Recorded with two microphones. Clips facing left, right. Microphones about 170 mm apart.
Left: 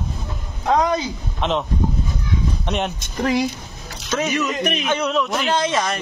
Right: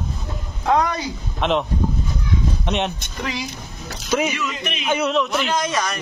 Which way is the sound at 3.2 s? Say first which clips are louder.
Left 9 dB; 45° left (ahead or behind).